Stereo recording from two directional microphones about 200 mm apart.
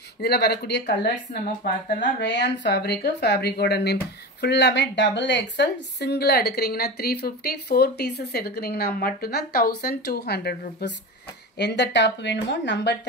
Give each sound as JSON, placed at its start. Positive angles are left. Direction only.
{"t": 0.2, "sound": "speech", "side_deg": 55}
{"t": 2.1, "sound": "speech", "side_deg": 60}